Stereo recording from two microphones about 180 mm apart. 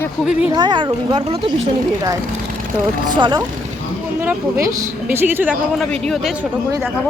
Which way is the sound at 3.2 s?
25° right (ahead or behind).